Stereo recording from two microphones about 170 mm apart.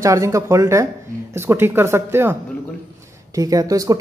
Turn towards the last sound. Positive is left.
turn(degrees=-20)  # may be behind; listen again after turning